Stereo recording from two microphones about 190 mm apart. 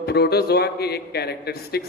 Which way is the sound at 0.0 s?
55° left (ahead or behind).